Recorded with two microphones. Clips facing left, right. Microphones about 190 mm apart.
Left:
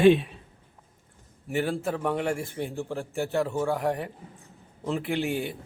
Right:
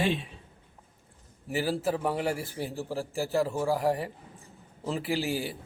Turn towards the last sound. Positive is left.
turn(degrees=0)  # may be behind; listen again after turning